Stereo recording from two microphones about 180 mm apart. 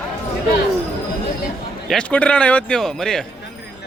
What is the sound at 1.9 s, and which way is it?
Speech, 5° left (ahead or behind).